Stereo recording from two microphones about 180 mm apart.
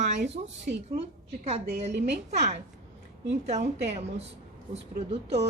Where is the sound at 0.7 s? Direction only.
55° right (ahead or behind).